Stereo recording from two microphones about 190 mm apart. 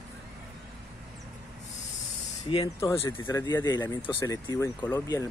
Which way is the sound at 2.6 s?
15° left (ahead or behind).